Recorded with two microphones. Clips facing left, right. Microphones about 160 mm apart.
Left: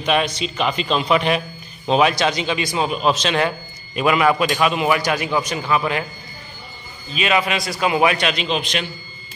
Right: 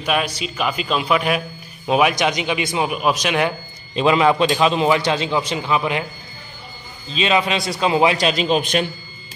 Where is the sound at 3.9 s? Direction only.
25° right (ahead or behind).